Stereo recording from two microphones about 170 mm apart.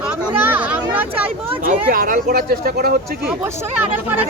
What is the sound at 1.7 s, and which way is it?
Speech, 55° right (ahead or behind).